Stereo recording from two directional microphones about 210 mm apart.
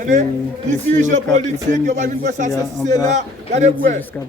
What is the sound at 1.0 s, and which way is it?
Speech, 35° right (ahead or behind).